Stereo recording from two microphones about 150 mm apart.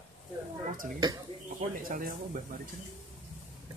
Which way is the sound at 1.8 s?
70° right (ahead or behind).